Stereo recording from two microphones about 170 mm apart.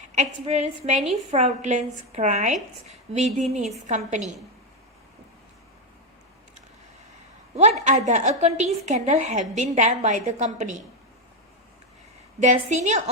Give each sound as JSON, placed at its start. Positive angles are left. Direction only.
{"t": 0.2, "sound": "a woman's voice", "side_deg": -40}
{"t": 7.5, "sound": "a woman's voice", "side_deg": -40}
{"t": 12.4, "sound": "a woman's voice", "side_deg": -45}